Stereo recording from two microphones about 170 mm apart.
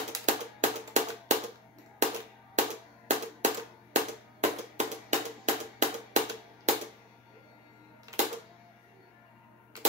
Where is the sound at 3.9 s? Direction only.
45° right (ahead or behind).